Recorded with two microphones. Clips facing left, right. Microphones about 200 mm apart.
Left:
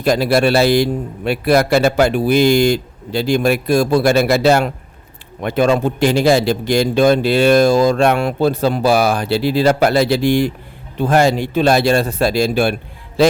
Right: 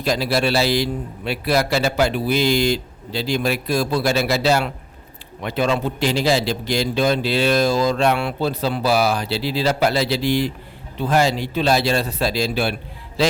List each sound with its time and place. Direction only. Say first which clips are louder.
0.0 s a man's voice: left 6 dB; 55° left (ahead or behind)
13.2 s mantra: left 7 dB; 55° left (ahead or behind)